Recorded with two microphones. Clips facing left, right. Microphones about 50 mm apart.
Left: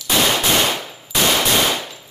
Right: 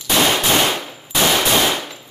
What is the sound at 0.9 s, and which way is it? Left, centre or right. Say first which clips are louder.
Clang: right 1 dB; centre.